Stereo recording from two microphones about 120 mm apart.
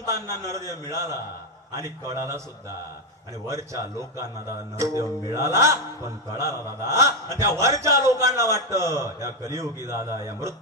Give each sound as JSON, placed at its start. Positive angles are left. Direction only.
{"t": 0.5, "sound": "a man's voice", "side_deg": -25}
{"t": 3.4, "sound": "a man's voice", "side_deg": -25}